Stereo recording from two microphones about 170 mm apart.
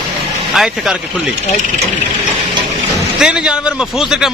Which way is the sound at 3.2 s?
5° right (ahead or behind).